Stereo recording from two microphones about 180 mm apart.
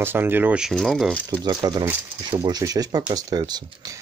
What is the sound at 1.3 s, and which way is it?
Speech, 25° right (ahead or behind).